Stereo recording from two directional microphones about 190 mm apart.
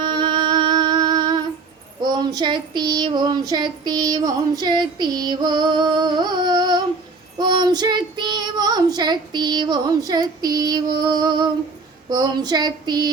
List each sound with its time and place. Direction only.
0.0 s music: 25° right (ahead or behind)
2.0 s child singing: 25° right (ahead or behind)